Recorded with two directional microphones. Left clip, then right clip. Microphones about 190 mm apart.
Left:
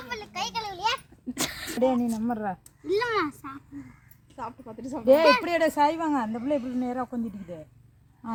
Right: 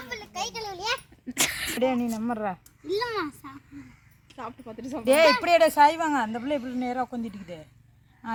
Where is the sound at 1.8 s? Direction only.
15° right (ahead or behind).